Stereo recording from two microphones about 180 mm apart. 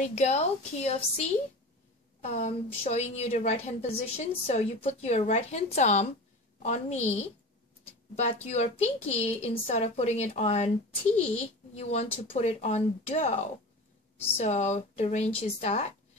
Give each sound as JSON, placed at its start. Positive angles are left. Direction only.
{"t": 0.0, "sound": "a woman's voice", "side_deg": 40}